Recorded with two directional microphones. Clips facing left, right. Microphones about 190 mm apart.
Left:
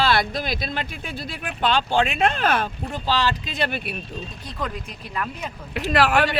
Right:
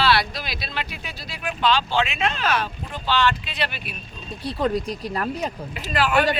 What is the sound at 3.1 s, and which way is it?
Speech, 35° left (ahead or behind).